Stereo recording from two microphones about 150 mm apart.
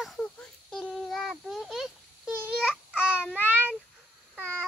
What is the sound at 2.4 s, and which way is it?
Child singing, 10° right (ahead or behind).